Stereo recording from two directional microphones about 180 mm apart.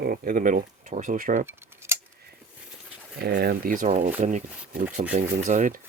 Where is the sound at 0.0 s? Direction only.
55° right (ahead or behind).